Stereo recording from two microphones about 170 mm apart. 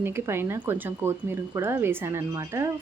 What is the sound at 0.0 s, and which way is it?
Speech, 15° right (ahead or behind).